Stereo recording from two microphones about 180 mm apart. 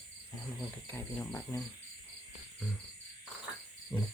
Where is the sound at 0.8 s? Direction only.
10° left (ahead or behind).